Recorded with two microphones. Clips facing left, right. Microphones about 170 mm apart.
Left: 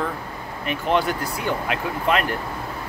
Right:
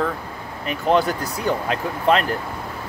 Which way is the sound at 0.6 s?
35° right (ahead or behind).